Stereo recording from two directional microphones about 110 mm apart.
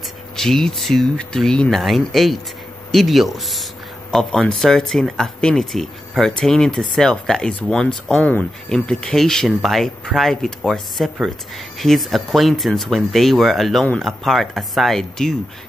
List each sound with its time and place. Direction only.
0.4 s speech: 5° left (ahead or behind)